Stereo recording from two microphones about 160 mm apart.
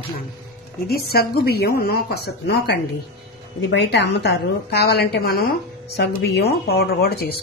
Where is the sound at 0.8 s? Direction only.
75° left (ahead or behind).